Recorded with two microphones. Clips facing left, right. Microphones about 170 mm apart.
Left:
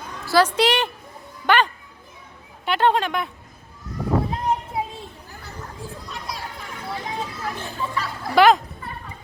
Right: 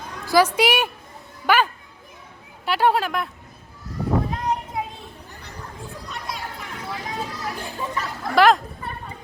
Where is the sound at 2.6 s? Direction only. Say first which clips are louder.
Even; 5° right (ahead or behind).